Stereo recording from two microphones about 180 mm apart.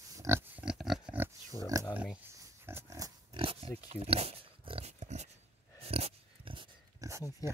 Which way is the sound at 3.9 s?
35° right (ahead or behind).